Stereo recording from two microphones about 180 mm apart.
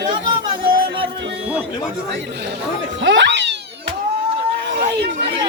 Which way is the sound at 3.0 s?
85° right.